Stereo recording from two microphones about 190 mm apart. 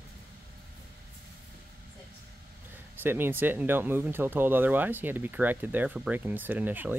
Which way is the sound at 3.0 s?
10° right (ahead or behind).